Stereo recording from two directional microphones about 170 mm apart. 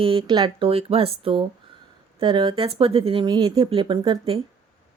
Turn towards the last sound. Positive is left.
turn(degrees=-30)  # may be behind; listen again after turning